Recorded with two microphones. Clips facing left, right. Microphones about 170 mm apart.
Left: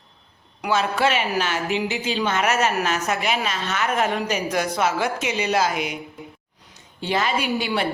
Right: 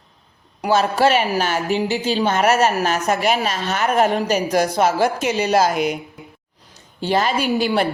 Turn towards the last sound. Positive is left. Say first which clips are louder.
# right 5 dB
turn(degrees=-40)  # may be behind; listen again after turning